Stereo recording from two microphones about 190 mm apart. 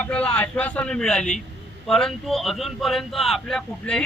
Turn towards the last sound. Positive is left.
turn(degrees=5)  # may be behind; listen again after turning